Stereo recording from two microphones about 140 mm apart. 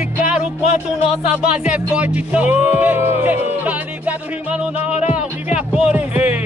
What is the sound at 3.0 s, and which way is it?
Speech, 50° left (ahead or behind).